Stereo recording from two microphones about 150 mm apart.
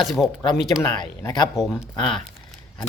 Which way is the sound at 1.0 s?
30° left (ahead or behind).